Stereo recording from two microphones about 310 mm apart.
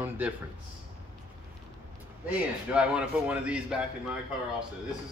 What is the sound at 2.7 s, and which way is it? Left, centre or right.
Speech, centre.